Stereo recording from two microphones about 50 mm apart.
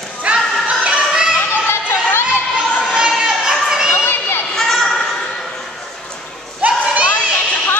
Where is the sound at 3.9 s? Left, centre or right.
Left.